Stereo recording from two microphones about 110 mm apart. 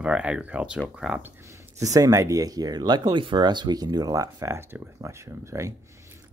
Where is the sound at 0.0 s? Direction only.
10° right (ahead or behind).